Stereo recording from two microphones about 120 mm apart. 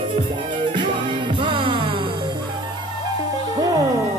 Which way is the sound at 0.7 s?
45° right (ahead or behind).